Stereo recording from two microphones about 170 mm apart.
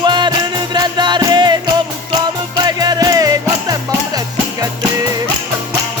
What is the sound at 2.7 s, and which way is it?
Music, 25° right (ahead or behind).